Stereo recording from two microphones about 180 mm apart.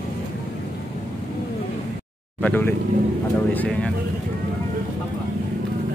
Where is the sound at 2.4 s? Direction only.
10° left (ahead or behind).